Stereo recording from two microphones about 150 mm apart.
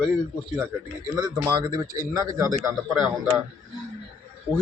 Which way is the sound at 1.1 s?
25° right (ahead or behind).